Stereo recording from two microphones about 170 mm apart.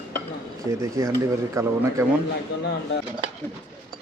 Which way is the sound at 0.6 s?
20° right (ahead or behind).